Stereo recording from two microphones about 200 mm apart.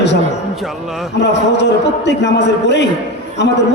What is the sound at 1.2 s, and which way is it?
A man's voice, 60° left (ahead or behind).